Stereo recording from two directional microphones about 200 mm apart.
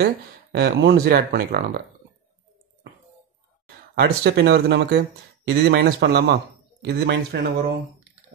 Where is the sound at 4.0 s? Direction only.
55° right (ahead or behind).